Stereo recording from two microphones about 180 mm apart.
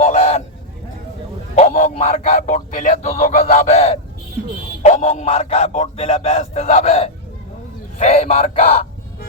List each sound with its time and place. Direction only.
0.0 s fowl: 40° left (ahead or behind)
1.5 s speech: 40° left (ahead or behind)